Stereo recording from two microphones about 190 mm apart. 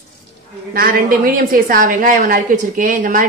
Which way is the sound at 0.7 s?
50° right (ahead or behind).